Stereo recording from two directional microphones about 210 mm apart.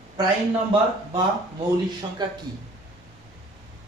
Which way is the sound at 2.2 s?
20° right (ahead or behind).